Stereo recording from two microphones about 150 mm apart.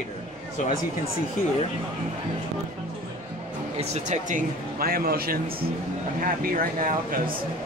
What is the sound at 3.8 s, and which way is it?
Speech, 55° right (ahead or behind).